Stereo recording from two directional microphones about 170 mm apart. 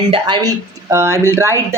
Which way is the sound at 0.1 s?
25° right (ahead or behind).